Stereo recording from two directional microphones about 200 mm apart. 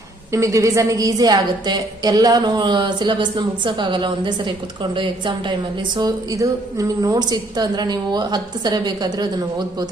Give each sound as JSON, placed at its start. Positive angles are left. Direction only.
{"t": 0.3, "sound": "a woman's voice", "side_deg": -15}